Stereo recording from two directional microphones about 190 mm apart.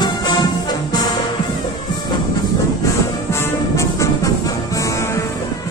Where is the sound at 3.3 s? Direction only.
15° left (ahead or behind).